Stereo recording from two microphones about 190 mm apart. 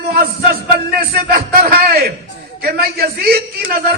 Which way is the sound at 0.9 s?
50° right (ahead or behind).